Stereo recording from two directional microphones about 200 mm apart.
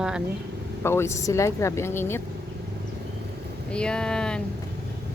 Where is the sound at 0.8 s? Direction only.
10° left (ahead or behind).